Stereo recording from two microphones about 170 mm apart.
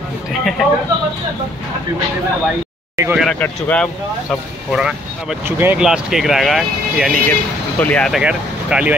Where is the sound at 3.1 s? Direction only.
Centre (ahead or behind).